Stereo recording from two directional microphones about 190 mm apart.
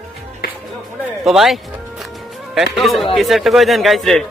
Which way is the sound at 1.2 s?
Centre (ahead or behind).